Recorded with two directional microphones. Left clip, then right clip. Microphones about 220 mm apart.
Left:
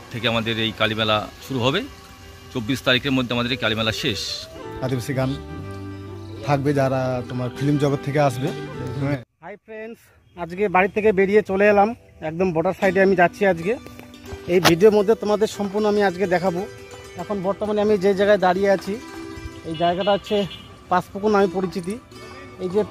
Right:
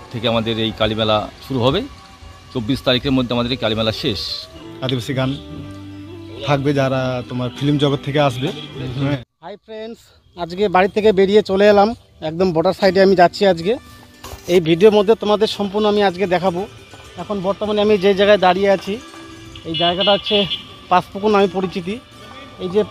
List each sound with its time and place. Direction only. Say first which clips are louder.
0.1 s speech: right 3 dB; centre (ahead or behind)
6.4 s speech: right 3 dB; 15° left (ahead or behind)
7.2 s speech: right 3 dB; centre (ahead or behind)
7.4 s speech: right 4 dB; 15° left (ahead or behind)
17.2 s speech: right 3 dB; 5° right (ahead or behind)
19.8 s speech: right 4 dB; 5° right (ahead or behind)